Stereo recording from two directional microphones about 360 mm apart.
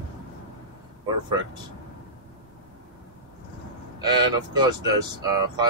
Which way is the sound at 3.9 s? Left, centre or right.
Centre.